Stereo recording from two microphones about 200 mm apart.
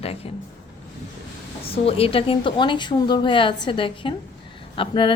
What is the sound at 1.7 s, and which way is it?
Speech, 30° left (ahead or behind).